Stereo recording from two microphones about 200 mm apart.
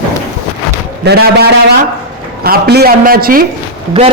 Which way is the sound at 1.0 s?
55° right (ahead or behind).